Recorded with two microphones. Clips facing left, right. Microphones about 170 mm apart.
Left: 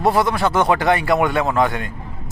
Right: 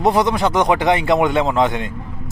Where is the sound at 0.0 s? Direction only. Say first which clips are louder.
Right 1 dB; 20° right (ahead or behind).